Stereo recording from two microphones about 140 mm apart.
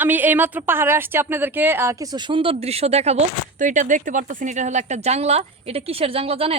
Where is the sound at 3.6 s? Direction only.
65° right (ahead or behind); by 6.6 s 45° right (ahead or behind).